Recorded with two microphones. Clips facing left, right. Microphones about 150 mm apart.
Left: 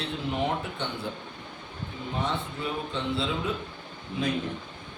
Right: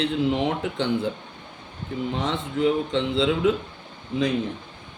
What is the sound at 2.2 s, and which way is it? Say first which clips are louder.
Speech: right 5 dB; 90° right.